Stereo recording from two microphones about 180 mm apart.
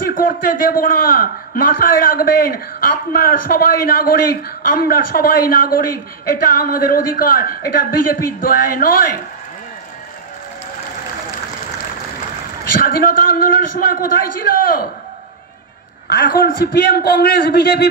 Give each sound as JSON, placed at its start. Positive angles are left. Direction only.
{"t": 0.1, "sound": "a man's voice", "side_deg": 50}
{"t": 12.8, "sound": "a man's voice", "side_deg": 55}
{"t": 16.1, "sound": "a man's voice", "side_deg": 65}